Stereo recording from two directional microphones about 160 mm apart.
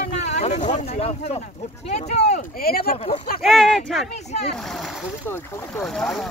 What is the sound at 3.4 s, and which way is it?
Speech, 5° left (ahead or behind).